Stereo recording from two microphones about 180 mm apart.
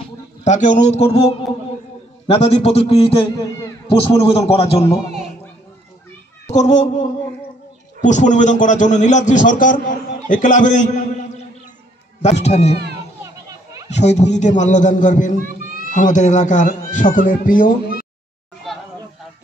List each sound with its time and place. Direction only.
0.4 s a man's voice: 45° left (ahead or behind)
2.2 s a man's voice: 35° left (ahead or behind)
6.4 s a man's voice: 40° left (ahead or behind)
13.2 s children playing: 20° right (ahead or behind)
13.8 s a man's voice: 40° left (ahead or behind)
18.7 s a sound: centre (ahead or behind)